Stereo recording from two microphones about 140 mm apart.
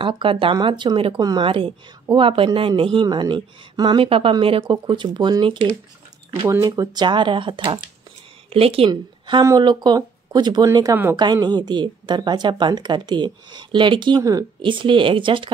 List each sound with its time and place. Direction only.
0.0 s a woman's voice: 40° right (ahead or behind)
9.4 s speech: 30° right (ahead or behind)